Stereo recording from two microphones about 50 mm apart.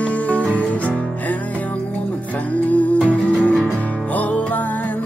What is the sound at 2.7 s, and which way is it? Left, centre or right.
Music, left.